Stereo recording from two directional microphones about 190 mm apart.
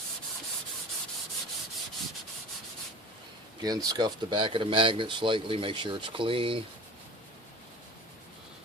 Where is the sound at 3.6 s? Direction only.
20° right (ahead or behind).